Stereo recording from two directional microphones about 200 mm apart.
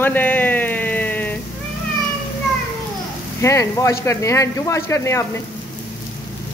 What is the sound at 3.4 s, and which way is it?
Speech, 15° left (ahead or behind).